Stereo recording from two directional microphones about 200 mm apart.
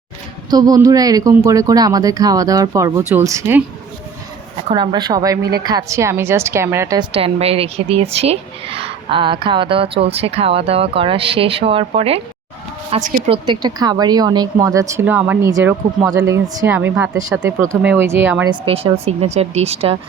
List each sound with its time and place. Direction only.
0.5 s speech: 20° right (ahead or behind)
4.7 s speech: 20° right (ahead or behind)
18.6 s speech: 30° right (ahead or behind)